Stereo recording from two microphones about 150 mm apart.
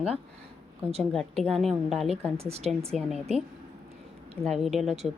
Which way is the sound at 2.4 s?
45° right (ahead or behind).